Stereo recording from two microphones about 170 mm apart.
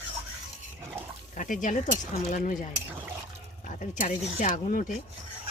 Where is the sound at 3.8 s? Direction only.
50° left (ahead or behind).